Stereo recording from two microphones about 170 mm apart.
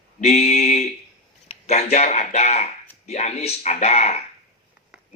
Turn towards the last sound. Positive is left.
turn(degrees=40)  # may be behind; listen again after turning